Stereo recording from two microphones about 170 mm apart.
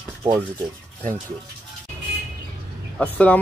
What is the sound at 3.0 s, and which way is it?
Speech, 5° left (ahead or behind).